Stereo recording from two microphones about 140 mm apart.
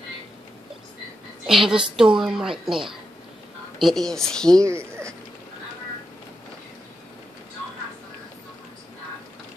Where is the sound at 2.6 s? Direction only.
35° right (ahead or behind).